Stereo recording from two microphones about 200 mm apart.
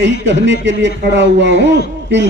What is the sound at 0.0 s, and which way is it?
A man's voice, 60° right (ahead or behind).